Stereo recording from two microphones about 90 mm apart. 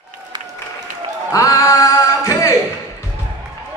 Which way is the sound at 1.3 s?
35° left (ahead or behind).